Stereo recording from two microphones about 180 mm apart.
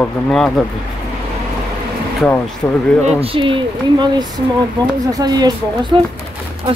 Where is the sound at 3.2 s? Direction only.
30° right (ahead or behind).